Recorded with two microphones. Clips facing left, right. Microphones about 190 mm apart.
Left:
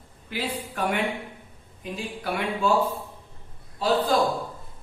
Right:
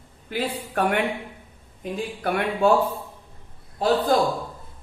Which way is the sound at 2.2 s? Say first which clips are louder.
Right 5 dB; 55° right (ahead or behind).